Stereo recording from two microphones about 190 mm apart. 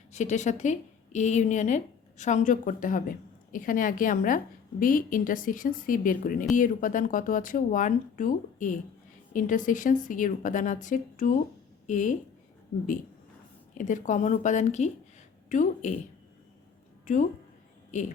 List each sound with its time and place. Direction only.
0.1 s a woman's voice: 40° left (ahead or behind)
13.7 s speech: 40° left (ahead or behind)